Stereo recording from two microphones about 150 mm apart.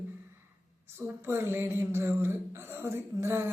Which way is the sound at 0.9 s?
15° right (ahead or behind).